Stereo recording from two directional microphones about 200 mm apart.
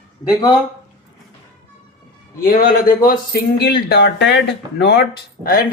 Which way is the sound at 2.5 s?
45° left (ahead or behind).